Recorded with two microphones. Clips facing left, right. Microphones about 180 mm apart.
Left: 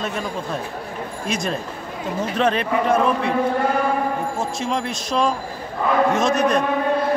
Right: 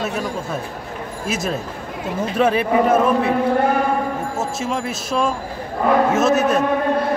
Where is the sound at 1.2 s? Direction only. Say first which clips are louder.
Right 2 dB; 5° right (ahead or behind).